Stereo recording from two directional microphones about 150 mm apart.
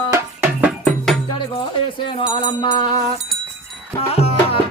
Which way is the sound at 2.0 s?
35° left (ahead or behind).